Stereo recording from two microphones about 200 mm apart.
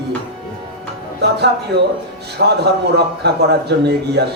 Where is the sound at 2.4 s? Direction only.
60° right (ahead or behind).